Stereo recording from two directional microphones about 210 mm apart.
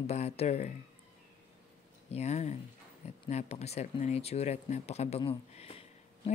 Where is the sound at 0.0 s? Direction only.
30° left (ahead or behind).